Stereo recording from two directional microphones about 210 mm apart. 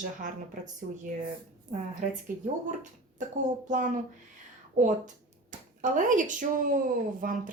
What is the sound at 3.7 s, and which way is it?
Speech, 35° right (ahead or behind).